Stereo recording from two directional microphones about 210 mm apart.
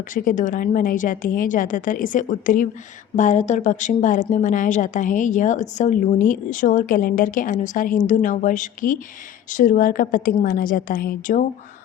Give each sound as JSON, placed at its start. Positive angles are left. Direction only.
{"t": 0.1, "sound": "a woman's voice", "side_deg": 40}